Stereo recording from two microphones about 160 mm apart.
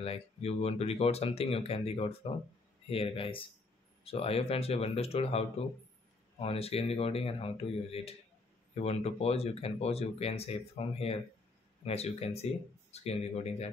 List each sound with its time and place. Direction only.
0.0 s speech: 40° left (ahead or behind)